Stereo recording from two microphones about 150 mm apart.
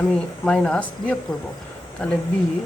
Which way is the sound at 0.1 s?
5° left (ahead or behind).